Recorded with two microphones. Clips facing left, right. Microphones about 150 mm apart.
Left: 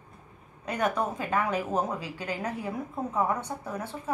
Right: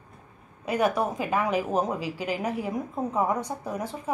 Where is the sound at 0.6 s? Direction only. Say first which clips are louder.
Right 4 dB; 10° right (ahead or behind).